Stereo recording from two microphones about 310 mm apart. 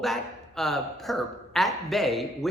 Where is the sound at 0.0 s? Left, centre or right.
Centre.